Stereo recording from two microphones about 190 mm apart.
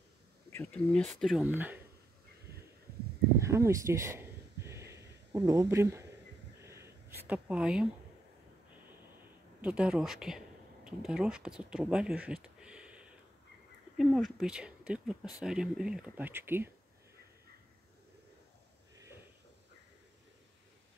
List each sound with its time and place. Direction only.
0.5 s speech: 10° left (ahead or behind); by 1.8 s 10° right (ahead or behind)
3.3 s a sound: 15° right (ahead or behind)
7.2 s speech: 5° right (ahead or behind)
9.6 s speech: 5° right (ahead or behind)
12.3 s a sound: 5° right (ahead or behind)
13.9 s speech: centre (ahead or behind)